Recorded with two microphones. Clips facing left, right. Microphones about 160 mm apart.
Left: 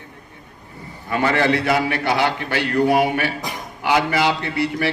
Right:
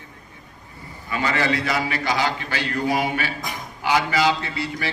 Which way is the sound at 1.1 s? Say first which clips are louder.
Left 5 dB; 55° left (ahead or behind).